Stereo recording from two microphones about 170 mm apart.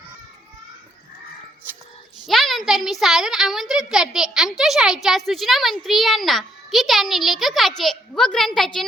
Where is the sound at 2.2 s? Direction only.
Centre (ahead or behind).